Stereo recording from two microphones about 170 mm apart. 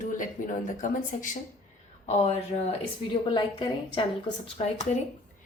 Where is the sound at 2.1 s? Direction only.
35° left (ahead or behind).